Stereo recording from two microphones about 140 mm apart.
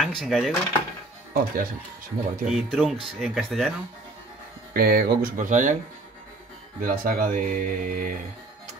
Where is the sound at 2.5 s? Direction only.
Centre (ahead or behind).